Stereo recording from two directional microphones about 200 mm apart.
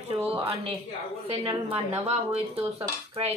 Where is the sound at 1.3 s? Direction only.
30° right (ahead or behind).